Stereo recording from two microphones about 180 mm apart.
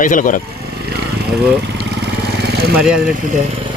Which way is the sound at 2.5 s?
60° right (ahead or behind).